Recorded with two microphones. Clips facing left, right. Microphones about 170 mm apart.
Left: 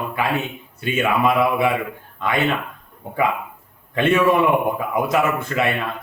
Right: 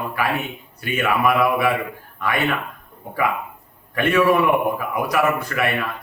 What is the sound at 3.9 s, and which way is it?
A man's voice, 25° left (ahead or behind).